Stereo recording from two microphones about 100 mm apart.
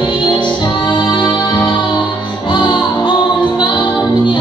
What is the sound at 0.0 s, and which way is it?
Music, 50° left (ahead or behind).